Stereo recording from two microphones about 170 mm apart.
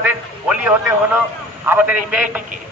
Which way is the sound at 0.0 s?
10° right (ahead or behind).